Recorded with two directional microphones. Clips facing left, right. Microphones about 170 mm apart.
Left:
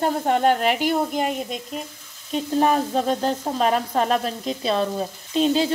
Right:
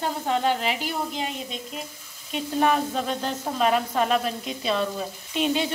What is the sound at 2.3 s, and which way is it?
Speech, 35° left (ahead or behind).